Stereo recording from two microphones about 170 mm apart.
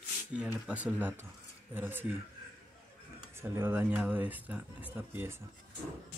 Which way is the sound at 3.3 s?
15° right (ahead or behind).